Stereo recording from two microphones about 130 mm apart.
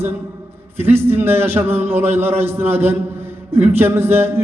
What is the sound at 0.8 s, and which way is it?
A man's voice, 15° right (ahead or behind).